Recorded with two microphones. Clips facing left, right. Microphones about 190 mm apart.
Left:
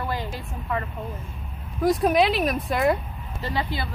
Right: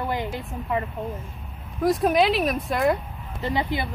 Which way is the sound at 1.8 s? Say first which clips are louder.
Even; centre (ahead or behind).